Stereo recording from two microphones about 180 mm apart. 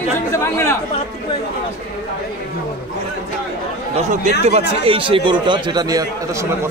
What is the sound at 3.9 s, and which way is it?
Speech, 40° right (ahead or behind).